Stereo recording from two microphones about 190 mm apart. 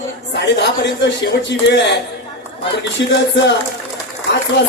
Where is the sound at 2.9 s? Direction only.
70° left (ahead or behind).